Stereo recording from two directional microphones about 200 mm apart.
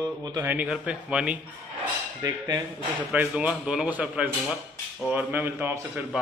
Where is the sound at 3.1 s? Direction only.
5° right (ahead or behind).